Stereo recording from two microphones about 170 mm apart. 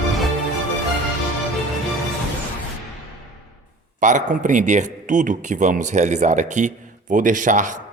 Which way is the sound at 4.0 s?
45° right (ahead or behind).